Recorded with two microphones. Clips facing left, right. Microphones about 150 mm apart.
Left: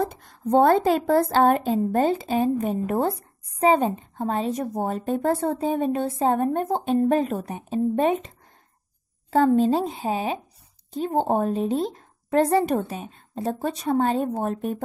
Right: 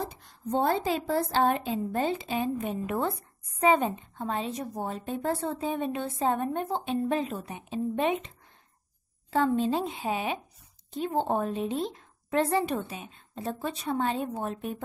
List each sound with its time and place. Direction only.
0.0 s a woman's voice: 50° left (ahead or behind)
9.3 s a woman's voice: 45° left (ahead or behind)